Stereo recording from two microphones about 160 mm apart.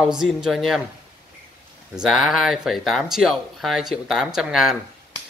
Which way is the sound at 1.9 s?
Centre (ahead or behind).